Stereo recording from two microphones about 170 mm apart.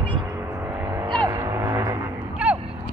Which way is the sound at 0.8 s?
20° right (ahead or behind).